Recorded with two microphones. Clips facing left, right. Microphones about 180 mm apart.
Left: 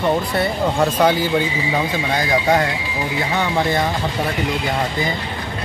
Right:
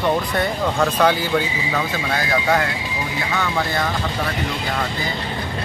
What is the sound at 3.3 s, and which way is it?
Speech, 20° left (ahead or behind).